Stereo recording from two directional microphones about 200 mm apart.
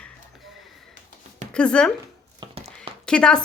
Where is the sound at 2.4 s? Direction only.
25° right (ahead or behind).